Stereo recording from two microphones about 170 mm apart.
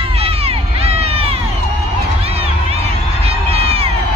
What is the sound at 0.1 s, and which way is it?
Crowd, 35° right (ahead or behind).